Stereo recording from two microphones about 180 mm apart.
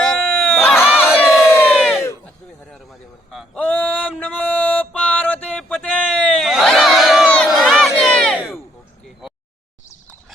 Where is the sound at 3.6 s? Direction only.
10° left (ahead or behind).